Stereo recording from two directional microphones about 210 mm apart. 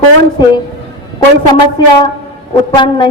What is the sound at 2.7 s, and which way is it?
Speech, 20° left (ahead or behind).